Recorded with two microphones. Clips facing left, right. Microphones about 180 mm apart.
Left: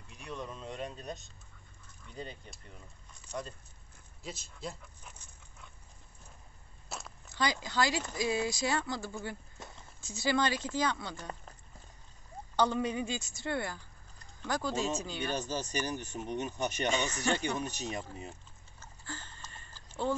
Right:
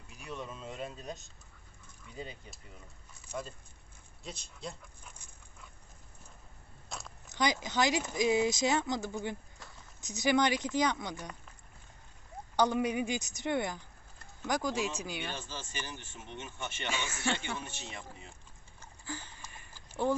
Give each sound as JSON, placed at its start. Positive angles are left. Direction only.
{"t": 0.1, "sound": "a sound", "side_deg": -5}
{"t": 2.0, "sound": "speech", "side_deg": -5}
{"t": 6.9, "sound": "biting", "side_deg": 5}
{"t": 7.2, "sound": "speech", "side_deg": -20}
{"t": 9.6, "sound": "a sound", "side_deg": 20}
{"t": 9.9, "sound": "speech", "side_deg": -20}
{"t": 12.5, "sound": "speech", "side_deg": -15}
{"t": 15.2, "sound": "speech", "side_deg": 40}
{"t": 16.9, "sound": "speech", "side_deg": 0}
{"t": 17.6, "sound": "speech", "side_deg": 40}
{"t": 18.8, "sound": "a sound", "side_deg": -15}